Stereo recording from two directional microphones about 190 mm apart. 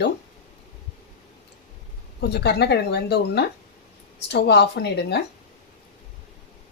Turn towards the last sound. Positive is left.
turn(degrees=60)  # may be behind; listen again after turning